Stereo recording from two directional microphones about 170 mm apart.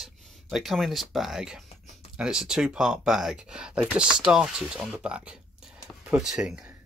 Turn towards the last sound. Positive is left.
turn(degrees=-5)  # may be behind; listen again after turning